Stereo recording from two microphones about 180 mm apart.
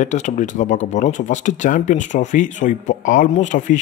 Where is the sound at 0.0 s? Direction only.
45° left (ahead or behind).